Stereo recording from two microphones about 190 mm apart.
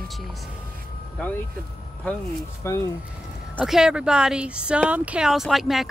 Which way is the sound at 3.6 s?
5° right (ahead or behind).